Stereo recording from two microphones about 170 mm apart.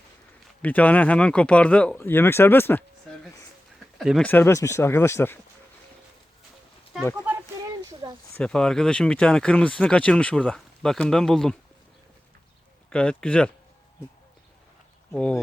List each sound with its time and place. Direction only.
0.6 s speech: 10° left (ahead or behind)
3.9 s speech: centre (ahead or behind)
4.3 s speech: 15° left (ahead or behind)
6.9 s speech: centre (ahead or behind)
8.0 s a sound: 25° right (ahead or behind)
8.4 s speech: 5° left (ahead or behind)
12.9 s speech: 5° left (ahead or behind)
15.1 s speech: 5° left (ahead or behind)